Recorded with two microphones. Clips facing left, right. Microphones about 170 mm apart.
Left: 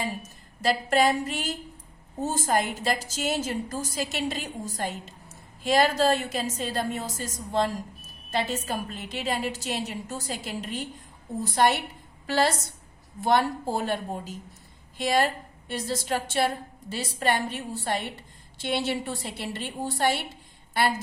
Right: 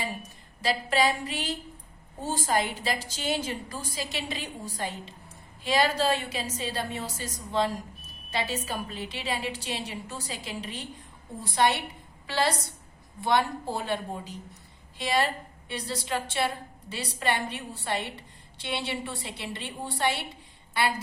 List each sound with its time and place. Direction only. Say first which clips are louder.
0.2 s a woman's voice: left 3 dB; 45° left (ahead or behind)